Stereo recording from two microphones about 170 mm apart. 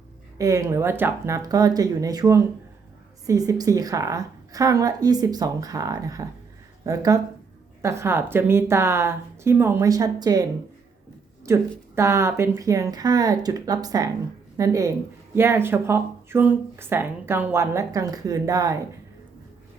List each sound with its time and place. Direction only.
0.3 s a woman's voice: 20° right (ahead or behind)
11.4 s a woman's voice: 15° right (ahead or behind)